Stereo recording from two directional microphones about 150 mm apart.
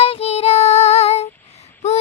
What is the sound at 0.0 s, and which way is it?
Child singing, 40° left (ahead or behind).